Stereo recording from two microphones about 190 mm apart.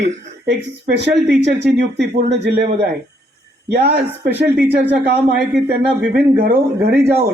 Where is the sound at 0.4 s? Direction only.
65° right (ahead or behind).